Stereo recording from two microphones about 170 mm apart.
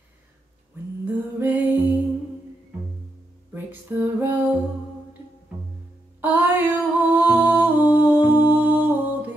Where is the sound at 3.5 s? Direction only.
10° right (ahead or behind).